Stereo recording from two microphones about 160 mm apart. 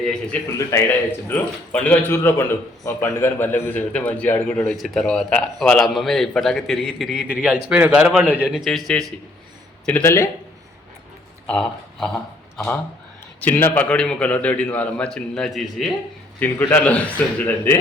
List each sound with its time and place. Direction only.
0.0 s speech: 5° left (ahead or behind)
0.7 s a man's voice: 20° left (ahead or behind); by 9.1 s centre (ahead or behind)
9.8 s a man's voice: 10° left (ahead or behind)
11.4 s a man's voice: 5° left (ahead or behind)
16.4 s a man's voice: 10° left (ahead or behind)